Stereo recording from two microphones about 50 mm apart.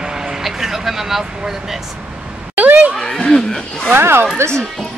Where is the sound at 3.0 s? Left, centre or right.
Centre.